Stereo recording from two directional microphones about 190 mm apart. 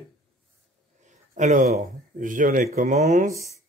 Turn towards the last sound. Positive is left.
turn(degrees=-40)  # may be behind; listen again after turning